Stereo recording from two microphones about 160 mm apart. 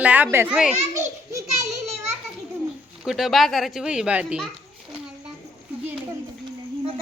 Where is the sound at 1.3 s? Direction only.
20° right (ahead or behind).